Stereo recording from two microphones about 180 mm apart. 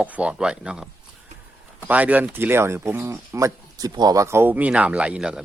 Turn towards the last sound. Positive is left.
turn(degrees=-5)  # may be behind; listen again after turning